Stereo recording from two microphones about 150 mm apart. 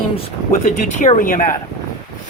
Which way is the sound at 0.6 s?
55° left (ahead or behind).